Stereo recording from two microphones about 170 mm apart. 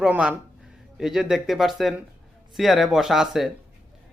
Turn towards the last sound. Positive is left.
turn(degrees=0)  # may be behind; listen again after turning